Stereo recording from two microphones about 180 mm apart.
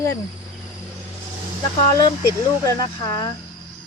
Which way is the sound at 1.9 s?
20° left (ahead or behind).